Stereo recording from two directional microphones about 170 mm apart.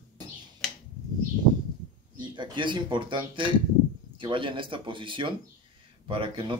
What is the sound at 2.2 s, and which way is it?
Speech, 25° right (ahead or behind).